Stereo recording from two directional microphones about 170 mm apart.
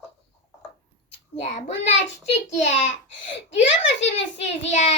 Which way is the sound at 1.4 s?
40° left (ahead or behind).